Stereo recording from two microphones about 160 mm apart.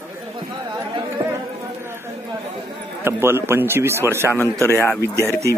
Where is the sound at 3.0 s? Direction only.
15° right (ahead or behind).